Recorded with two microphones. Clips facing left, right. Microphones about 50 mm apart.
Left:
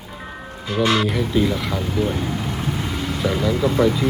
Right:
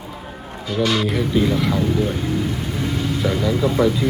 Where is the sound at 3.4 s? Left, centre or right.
Centre.